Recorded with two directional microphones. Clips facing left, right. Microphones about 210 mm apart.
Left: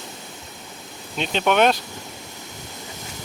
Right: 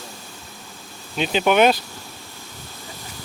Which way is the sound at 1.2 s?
5° right (ahead or behind).